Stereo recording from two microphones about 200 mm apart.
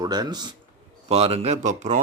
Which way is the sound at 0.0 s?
20° right (ahead or behind).